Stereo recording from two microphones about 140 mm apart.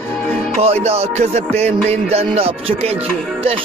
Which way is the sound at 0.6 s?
45° right (ahead or behind).